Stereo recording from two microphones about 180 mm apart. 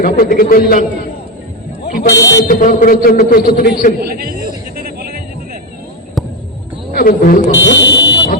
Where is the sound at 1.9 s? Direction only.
55° left (ahead or behind).